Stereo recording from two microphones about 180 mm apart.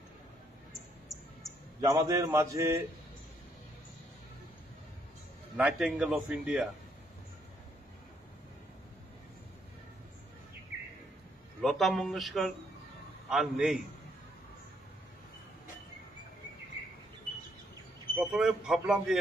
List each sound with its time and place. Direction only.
1.9 s a man's voice: 20° right (ahead or behind)
5.6 s a man's voice: 5° right (ahead or behind)
11.6 s a man's voice: centre (ahead or behind)
18.1 s a man's voice: centre (ahead or behind)